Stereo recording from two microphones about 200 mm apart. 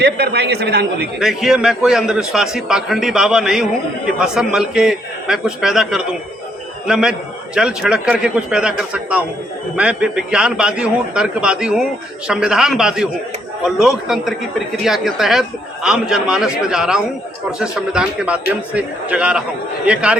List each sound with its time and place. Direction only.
0.0 s a man's voice: 55° right (ahead or behind)
1.2 s a man's voice: centre (ahead or behind)